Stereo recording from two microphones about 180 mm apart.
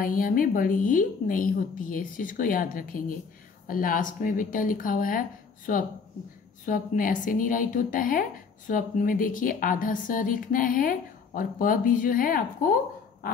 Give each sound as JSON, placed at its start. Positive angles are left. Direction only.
{"t": 0.0, "sound": "a woman's voice", "side_deg": 50}
{"t": 6.6, "sound": "a woman's voice", "side_deg": 45}
{"t": 13.2, "sound": "dog", "side_deg": 55}